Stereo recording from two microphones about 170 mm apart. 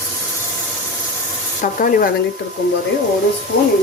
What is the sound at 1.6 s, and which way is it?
Speech, 55° left (ahead or behind).